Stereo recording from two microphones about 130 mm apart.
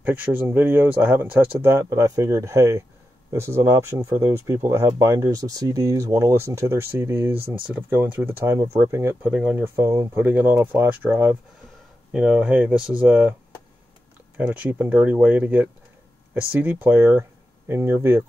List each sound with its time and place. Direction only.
0.0 s speech: 15° right (ahead or behind)
9.8 s speech: 25° right (ahead or behind)
14.3 s speech: 15° right (ahead or behind)
16.8 s speech: 15° right (ahead or behind)